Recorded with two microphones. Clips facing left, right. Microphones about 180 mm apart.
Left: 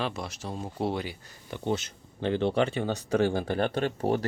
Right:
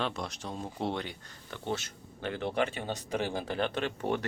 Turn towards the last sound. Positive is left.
turn(degrees=35)  # may be behind; listen again after turning